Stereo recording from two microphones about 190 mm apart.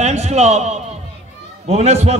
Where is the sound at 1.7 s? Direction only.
35° right (ahead or behind).